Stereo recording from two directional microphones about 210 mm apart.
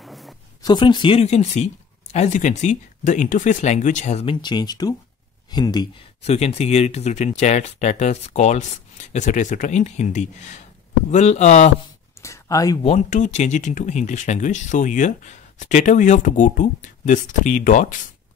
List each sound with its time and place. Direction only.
0.0 s a sound: centre (ahead or behind)
0.6 s speech: 20° left (ahead or behind)
6.2 s speech: 30° left (ahead or behind)
12.2 s speech: 15° left (ahead or behind)
12.8 s speech: 30° left (ahead or behind)